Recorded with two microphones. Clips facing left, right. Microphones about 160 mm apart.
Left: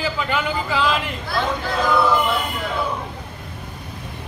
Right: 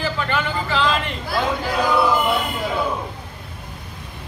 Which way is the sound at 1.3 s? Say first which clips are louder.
Right 1 dB; 10° right (ahead or behind).